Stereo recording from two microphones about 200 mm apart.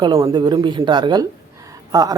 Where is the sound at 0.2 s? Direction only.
15° right (ahead or behind).